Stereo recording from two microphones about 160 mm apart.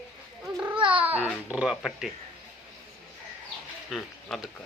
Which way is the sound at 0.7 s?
30° right (ahead or behind).